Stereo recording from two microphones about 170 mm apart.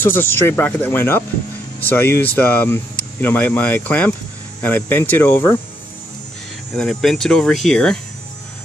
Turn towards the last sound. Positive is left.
turn(degrees=5)  # may be behind; listen again after turning